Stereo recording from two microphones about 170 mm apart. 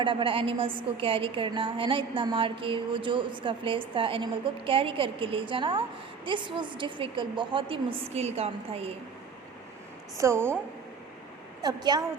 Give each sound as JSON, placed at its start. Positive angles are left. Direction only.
{"t": 0.0, "sound": "a woman's voice", "side_deg": -30}
{"t": 10.2, "sound": "a woman's voice", "side_deg": -15}
{"t": 11.6, "sound": "a woman's voice", "side_deg": -25}